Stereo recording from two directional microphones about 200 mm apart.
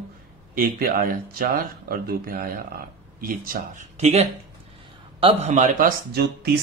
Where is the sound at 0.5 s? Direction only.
45° right (ahead or behind).